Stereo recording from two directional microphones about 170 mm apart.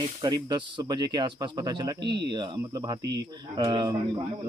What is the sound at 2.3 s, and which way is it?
Speech, 25° right (ahead or behind).